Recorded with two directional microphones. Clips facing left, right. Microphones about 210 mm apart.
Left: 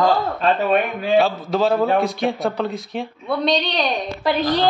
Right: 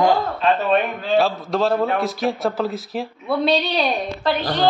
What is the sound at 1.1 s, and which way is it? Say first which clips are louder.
Speech: left 1 dB; centre (ahead or behind).